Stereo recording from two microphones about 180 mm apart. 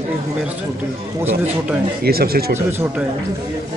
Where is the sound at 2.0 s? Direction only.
55° right (ahead or behind).